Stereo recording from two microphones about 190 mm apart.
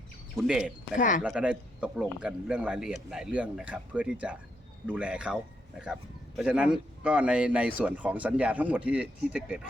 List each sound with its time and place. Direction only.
0.4 s speech: 5° right (ahead or behind)
0.9 s speech: 45° left (ahead or behind)
1.2 s speech: 5° right (ahead or behind)